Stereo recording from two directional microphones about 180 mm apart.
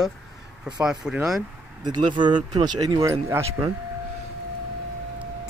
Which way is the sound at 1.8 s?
25° right (ahead or behind).